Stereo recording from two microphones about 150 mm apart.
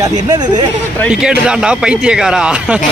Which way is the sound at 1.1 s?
5° right (ahead or behind).